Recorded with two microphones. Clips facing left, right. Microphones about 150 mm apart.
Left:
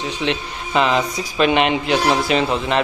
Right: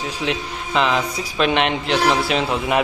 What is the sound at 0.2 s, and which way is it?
A man's voice, centre (ahead or behind).